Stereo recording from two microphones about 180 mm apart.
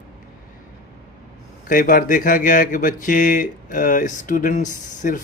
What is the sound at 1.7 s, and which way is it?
Speech, 50° left (ahead or behind).